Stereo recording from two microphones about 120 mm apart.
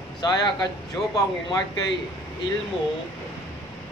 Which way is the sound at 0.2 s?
35° left (ahead or behind).